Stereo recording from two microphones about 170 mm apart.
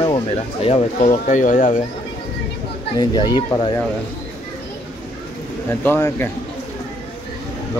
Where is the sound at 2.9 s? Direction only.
25° left (ahead or behind).